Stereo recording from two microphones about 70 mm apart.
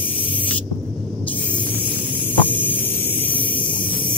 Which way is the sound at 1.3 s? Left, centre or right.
Left.